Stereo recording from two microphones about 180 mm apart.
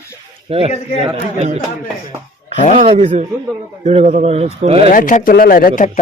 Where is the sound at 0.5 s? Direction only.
35° right (ahead or behind).